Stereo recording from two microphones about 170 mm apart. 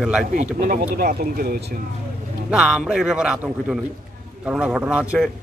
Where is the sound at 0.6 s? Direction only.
55° right (ahead or behind).